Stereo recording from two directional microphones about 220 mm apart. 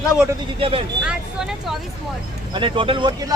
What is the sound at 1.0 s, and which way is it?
Speech, 5° right (ahead or behind).